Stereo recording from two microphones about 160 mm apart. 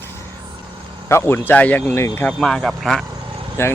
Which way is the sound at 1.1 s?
15° left (ahead or behind).